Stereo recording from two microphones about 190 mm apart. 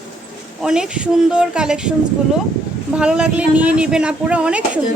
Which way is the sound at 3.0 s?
5° right (ahead or behind).